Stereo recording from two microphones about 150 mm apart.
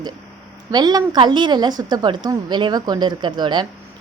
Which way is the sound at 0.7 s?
25° right (ahead or behind).